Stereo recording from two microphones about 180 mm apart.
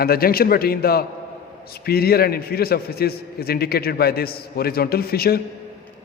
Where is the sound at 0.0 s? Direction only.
55° left (ahead or behind).